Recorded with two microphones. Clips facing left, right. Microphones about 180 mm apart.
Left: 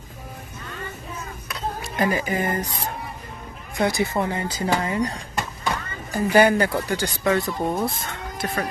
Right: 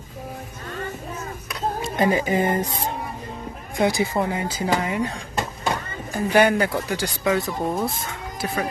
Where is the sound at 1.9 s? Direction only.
25° right (ahead or behind).